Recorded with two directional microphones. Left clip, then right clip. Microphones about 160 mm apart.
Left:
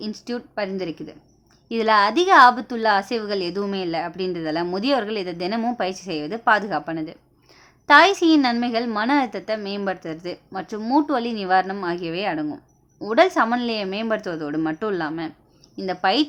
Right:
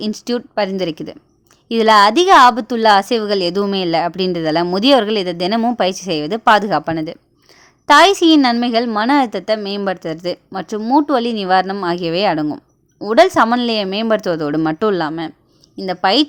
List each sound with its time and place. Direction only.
0.0 s a woman's voice: 50° right (ahead or behind)
13.0 s a woman's voice: 35° right (ahead or behind)